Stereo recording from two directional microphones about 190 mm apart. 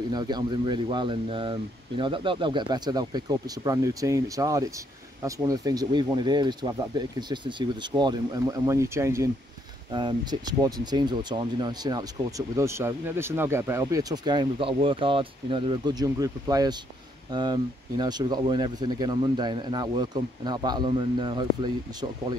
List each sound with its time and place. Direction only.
0.1 s speech: 20° right (ahead or behind)